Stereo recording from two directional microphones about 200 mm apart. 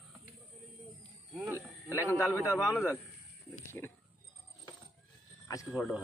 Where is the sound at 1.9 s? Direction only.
15° left (ahead or behind).